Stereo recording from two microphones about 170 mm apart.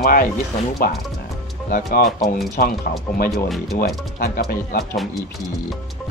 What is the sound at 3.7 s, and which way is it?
A man's voice, 60° left (ahead or behind).